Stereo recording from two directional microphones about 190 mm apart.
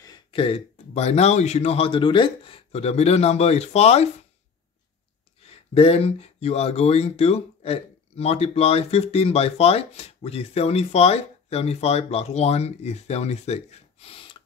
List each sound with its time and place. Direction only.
0.0 s speech: 25° left (ahead or behind)
5.4 s speech: 30° left (ahead or behind)